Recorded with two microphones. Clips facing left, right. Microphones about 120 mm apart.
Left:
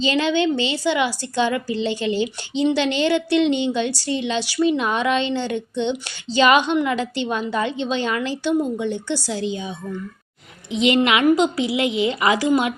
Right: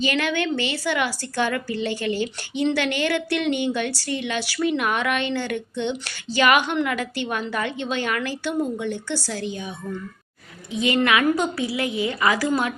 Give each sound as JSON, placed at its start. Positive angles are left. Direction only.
{"t": 0.0, "sound": "a woman's voice", "side_deg": 20}